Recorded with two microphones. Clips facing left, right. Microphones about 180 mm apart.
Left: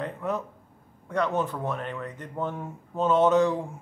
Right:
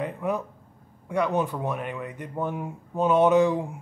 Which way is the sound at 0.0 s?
10° right (ahead or behind).